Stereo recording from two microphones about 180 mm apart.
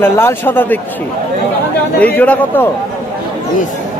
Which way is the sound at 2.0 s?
10° left (ahead or behind).